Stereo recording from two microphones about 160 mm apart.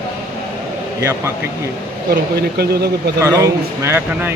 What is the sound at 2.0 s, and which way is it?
Speech, 80° right.